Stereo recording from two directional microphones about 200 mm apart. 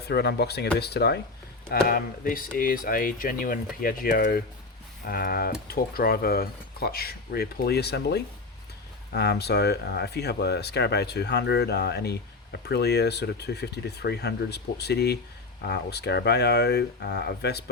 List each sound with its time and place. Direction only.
0.0 s speech: 55° left (ahead or behind)